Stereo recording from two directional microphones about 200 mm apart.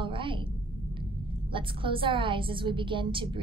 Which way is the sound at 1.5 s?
25° right (ahead or behind).